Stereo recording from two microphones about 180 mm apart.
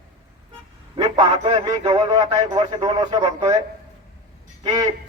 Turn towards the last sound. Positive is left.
turn(degrees=-20)  # may be behind; listen again after turning